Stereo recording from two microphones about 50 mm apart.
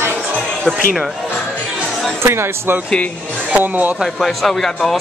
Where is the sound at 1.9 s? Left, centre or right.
Centre.